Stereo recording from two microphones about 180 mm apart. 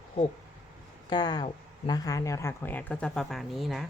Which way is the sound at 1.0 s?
25° left (ahead or behind).